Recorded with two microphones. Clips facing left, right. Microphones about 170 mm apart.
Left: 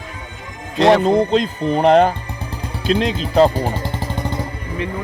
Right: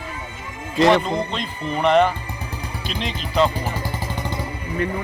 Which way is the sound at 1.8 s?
40° left (ahead or behind).